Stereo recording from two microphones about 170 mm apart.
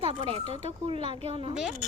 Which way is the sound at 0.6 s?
35° right (ahead or behind).